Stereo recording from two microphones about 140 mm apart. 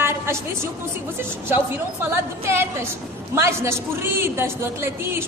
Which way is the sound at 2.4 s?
20° right (ahead or behind).